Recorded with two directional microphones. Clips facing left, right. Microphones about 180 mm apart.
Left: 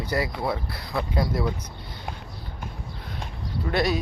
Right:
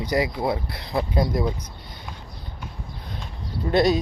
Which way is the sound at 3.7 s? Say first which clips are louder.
Right 5 dB; 20° right (ahead or behind).